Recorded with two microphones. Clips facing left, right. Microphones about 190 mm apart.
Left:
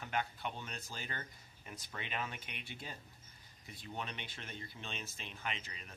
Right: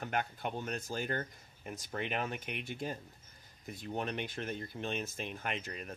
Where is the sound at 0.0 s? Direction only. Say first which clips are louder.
Right 3 dB; 50° right (ahead or behind).